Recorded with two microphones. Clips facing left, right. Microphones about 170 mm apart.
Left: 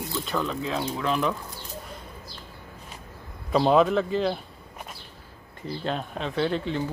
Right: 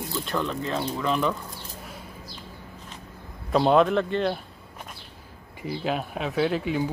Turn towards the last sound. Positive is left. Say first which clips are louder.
# right 2 dB
turn(degrees=-10)  # may be behind; listen again after turning